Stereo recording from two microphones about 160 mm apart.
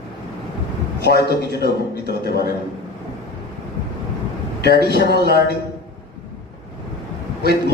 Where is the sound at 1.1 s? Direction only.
90° left.